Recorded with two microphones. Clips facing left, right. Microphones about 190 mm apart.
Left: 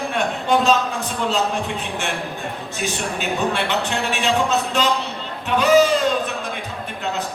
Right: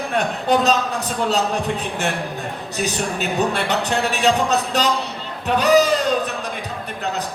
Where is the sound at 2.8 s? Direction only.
40° right (ahead or behind).